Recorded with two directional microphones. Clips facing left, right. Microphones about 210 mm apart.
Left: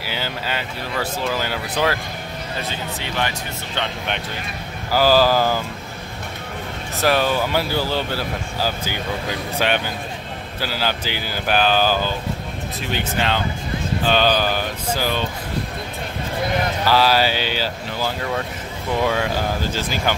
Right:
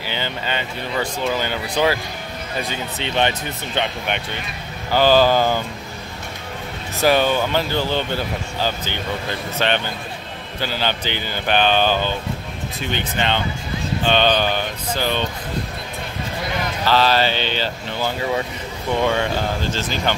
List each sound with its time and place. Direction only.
0.0 s speech: 5° left (ahead or behind)
2.7 s speech: 20° right (ahead or behind)
4.9 s speech: 5° left (ahead or behind)
7.0 s speech: centre (ahead or behind)
16.8 s speech: 10° left (ahead or behind)